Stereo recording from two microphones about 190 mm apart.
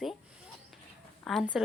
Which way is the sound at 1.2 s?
Centre (ahead or behind).